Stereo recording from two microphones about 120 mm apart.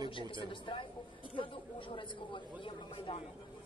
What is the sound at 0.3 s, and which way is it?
Speech, 45° left (ahead or behind).